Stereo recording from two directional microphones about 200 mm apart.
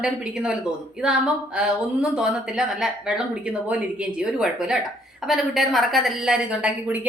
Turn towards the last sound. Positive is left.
turn(degrees=-5)  # may be behind; listen again after turning